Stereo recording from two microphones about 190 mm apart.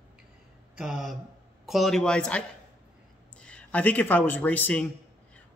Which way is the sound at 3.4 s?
5° left (ahead or behind).